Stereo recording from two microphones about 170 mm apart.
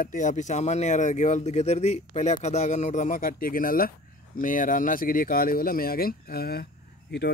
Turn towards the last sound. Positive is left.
turn(degrees=80)